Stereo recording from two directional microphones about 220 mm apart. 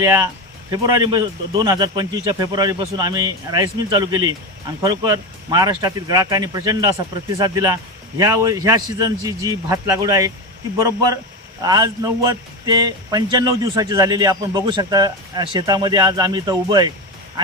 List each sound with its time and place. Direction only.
0.0 s speech: 15° right (ahead or behind)